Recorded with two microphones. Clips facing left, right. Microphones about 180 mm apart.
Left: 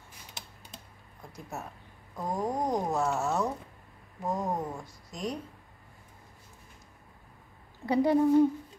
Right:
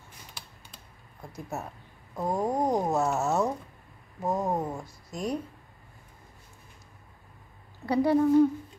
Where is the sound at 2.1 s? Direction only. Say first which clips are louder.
Right 4 dB; 25° right (ahead or behind).